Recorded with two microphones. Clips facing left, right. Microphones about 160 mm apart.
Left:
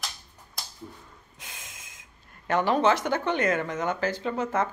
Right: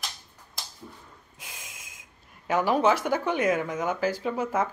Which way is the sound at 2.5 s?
5° right (ahead or behind).